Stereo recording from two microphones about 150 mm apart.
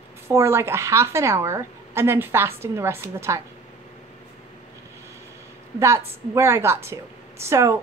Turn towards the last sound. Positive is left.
turn(degrees=-20)  # may be behind; listen again after turning